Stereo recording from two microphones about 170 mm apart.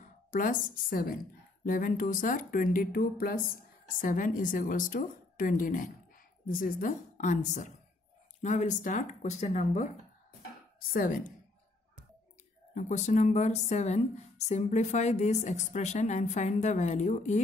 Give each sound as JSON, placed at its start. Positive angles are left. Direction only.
{"t": 0.0, "sound": "a woman's voice", "side_deg": 50}
{"t": 10.8, "sound": "a woman's voice", "side_deg": 55}
{"t": 12.7, "sound": "speech", "side_deg": 45}